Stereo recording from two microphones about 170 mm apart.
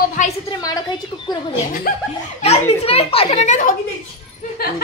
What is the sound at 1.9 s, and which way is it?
Speech, 60° left (ahead or behind).